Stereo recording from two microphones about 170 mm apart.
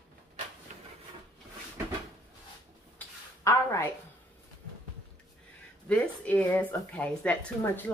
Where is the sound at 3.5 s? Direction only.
20° left (ahead or behind).